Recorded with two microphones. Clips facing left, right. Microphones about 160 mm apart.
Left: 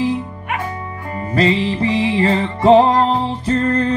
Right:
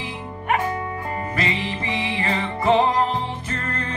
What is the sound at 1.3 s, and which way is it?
Music, 35° left (ahead or behind).